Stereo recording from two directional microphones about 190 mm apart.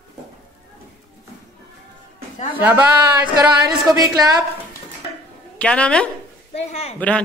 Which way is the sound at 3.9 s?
20° right (ahead or behind).